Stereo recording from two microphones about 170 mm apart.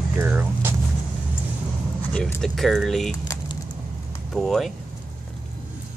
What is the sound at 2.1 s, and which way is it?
Speech, 5° left (ahead or behind).